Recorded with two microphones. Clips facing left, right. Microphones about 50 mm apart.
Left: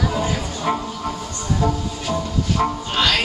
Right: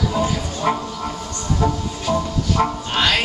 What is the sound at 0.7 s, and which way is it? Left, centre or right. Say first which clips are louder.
Speech: right 1 dB; centre.